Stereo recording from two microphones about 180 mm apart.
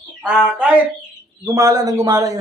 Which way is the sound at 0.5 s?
10° right (ahead or behind).